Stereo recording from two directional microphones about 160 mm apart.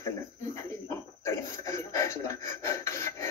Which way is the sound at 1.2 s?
15° left (ahead or behind).